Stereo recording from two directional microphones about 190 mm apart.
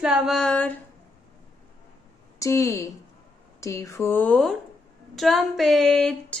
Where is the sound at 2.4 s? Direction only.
15° left (ahead or behind).